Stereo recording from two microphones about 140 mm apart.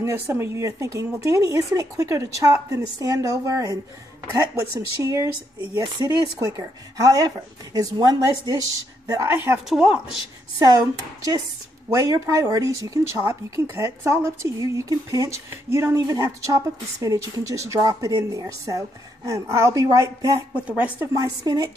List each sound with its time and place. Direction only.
0.0 s speech: 15° right (ahead or behind)
9.7 s speech: 5° right (ahead or behind)
11.9 s speech: 25° right (ahead or behind)
20.5 s speech: 10° right (ahead or behind)
21.1 s speech: 25° right (ahead or behind)